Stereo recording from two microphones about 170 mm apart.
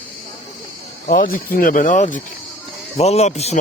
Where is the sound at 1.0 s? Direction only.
55° left (ahead or behind).